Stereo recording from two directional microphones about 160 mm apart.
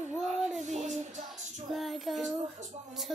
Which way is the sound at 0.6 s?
45° right (ahead or behind).